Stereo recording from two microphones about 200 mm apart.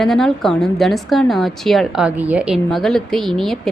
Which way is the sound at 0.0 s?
Centre (ahead or behind).